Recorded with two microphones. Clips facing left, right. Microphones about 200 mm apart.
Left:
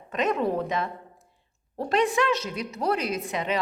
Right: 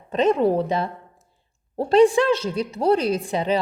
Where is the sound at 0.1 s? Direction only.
30° right (ahead or behind).